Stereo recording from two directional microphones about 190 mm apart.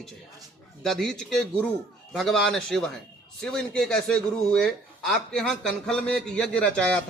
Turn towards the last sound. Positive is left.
turn(degrees=5)  # may be behind; listen again after turning